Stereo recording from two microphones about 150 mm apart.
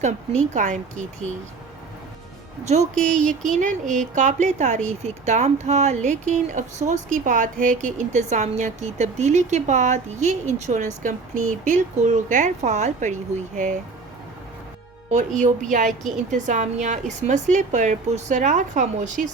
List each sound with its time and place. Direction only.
0.0 s speech: 50° right (ahead or behind)
2.9 s speech: 5° left (ahead or behind)
3.2 s a woman's voice: 60° right (ahead or behind)
15.1 s a woman's voice: 55° right (ahead or behind)